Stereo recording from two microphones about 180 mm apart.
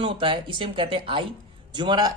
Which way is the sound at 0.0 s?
30° right (ahead or behind).